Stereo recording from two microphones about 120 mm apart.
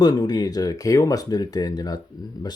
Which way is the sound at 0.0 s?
35° left (ahead or behind).